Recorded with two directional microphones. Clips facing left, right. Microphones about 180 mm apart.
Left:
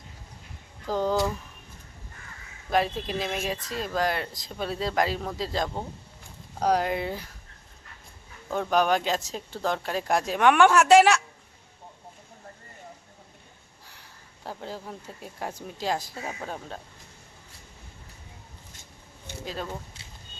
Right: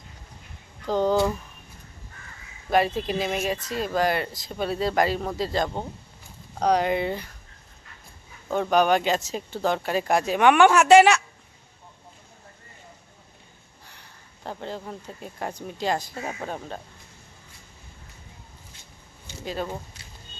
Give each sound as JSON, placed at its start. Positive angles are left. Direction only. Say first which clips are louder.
{"t": 0.9, "sound": "speech", "louder": "right 4 dB", "side_deg": 0}
{"t": 2.6, "sound": "speech", "louder": "right 3 dB", "side_deg": 0}
{"t": 8.4, "sound": "speech", "louder": "right 3 dB", "side_deg": 0}
{"t": 13.8, "sound": "speech", "louder": "right 1 dB", "side_deg": 5}
{"t": 19.3, "sound": "a sound", "louder": "left 2 dB", "side_deg": 60}